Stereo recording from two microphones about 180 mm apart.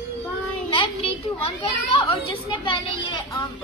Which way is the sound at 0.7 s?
30° left (ahead or behind).